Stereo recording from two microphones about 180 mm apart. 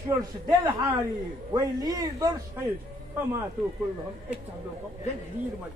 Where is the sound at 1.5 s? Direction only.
20° right (ahead or behind).